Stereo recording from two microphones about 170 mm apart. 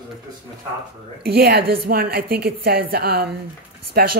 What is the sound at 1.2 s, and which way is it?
A woman's voice, 65° right (ahead or behind).